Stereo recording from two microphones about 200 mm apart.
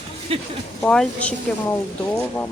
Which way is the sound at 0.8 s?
5° left (ahead or behind).